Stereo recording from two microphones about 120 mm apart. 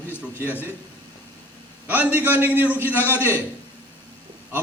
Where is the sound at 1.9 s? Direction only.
15° right (ahead or behind).